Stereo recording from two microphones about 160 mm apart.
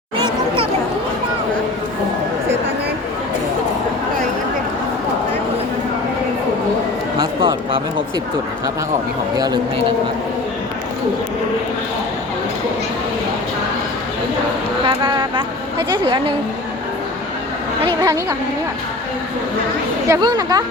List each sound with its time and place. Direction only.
0.2 s chatter: 35° right (ahead or behind)
7.2 s a sound: 30° right (ahead or behind)
14.8 s a woman's voice: 25° right (ahead or behind)
17.8 s a woman's voice: 20° right (ahead or behind)
20.1 s a woman's voice: 25° right (ahead or behind)